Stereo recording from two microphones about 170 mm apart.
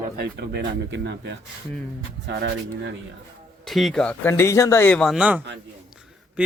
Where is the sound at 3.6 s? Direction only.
Centre (ahead or behind).